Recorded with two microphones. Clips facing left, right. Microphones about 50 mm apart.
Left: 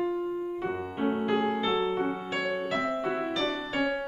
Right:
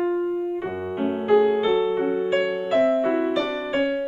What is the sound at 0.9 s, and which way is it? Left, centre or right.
Music, centre.